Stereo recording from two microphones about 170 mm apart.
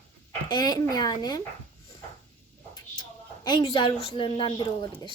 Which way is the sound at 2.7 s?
25° left (ahead or behind).